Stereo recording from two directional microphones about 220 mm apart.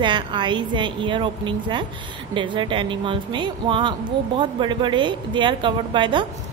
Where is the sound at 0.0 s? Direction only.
20° right (ahead or behind).